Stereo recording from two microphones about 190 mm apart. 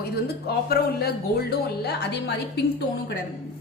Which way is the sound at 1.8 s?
60° left (ahead or behind).